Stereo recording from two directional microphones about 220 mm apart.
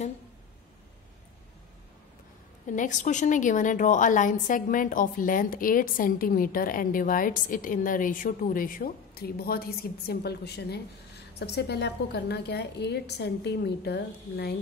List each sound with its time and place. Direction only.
2.7 s a woman's voice: 35° left (ahead or behind)